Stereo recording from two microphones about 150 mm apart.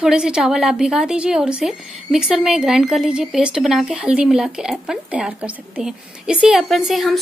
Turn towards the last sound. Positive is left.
turn(degrees=0)  # may be behind; listen again after turning